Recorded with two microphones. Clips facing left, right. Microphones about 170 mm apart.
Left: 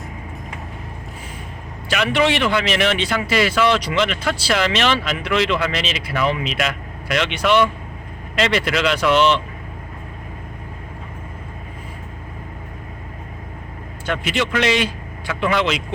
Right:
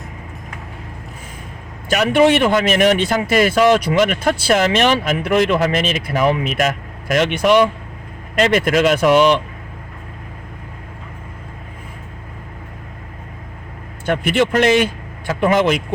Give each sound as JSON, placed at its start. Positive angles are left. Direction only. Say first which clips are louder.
{"t": 1.9, "sound": "speech", "louder": "right 5 dB", "side_deg": -45}
{"t": 9.1, "sound": "speech", "louder": "right 2 dB", "side_deg": -15}
{"t": 14.0, "sound": "speech", "louder": "right 6 dB", "side_deg": -50}